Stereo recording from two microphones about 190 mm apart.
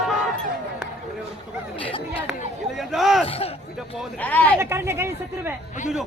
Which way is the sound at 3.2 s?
30° left (ahead or behind).